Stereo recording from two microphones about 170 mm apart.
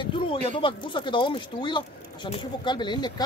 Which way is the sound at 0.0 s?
30° left (ahead or behind).